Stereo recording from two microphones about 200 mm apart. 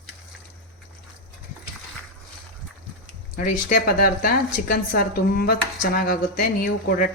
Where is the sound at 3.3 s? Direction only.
45° left (ahead or behind).